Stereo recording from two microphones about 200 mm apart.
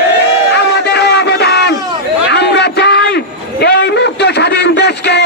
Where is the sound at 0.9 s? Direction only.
55° left (ahead or behind).